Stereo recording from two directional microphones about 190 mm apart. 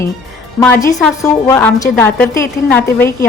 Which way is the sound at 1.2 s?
20° left (ahead or behind).